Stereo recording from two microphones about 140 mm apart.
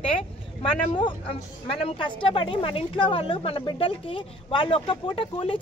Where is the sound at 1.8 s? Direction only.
40° left (ahead or behind).